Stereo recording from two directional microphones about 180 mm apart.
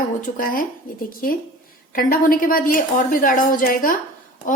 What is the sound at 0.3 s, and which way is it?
A woman's voice, 50° left (ahead or behind).